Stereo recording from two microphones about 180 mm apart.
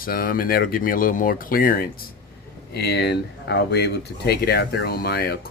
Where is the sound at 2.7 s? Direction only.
65° left (ahead or behind).